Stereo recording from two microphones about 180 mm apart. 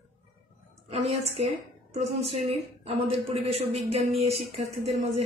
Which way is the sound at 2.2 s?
35° right (ahead or behind).